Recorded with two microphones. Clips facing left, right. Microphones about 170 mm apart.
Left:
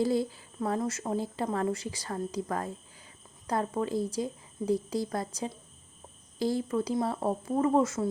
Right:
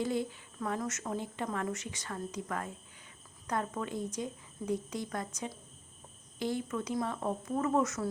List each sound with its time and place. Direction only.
0.0 s speech: 35° left (ahead or behind)